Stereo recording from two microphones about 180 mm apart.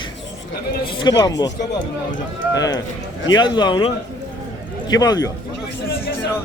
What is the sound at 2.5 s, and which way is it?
A man's voice, 20° left (ahead or behind).